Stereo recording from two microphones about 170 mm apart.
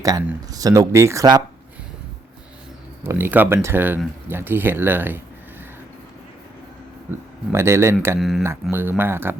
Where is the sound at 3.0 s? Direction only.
15° right (ahead or behind).